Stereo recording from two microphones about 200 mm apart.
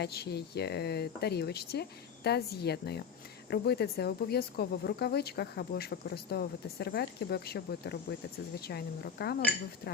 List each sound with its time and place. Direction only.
0.0 s speech: 55° left (ahead or behind)